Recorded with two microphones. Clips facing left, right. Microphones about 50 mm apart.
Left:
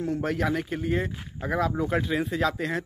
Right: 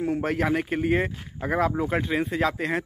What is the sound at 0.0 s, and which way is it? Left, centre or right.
Speech, right.